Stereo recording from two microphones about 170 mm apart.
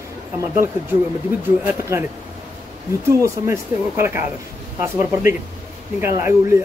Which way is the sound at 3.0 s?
15° right (ahead or behind).